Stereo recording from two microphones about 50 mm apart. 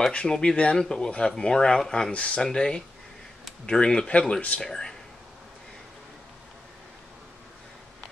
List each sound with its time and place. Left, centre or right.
0.1 s speech: left